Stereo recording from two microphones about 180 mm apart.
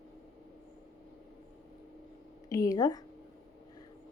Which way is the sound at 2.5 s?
20° left (ahead or behind).